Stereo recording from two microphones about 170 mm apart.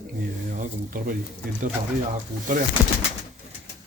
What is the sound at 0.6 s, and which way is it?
Speech, 50° right (ahead or behind).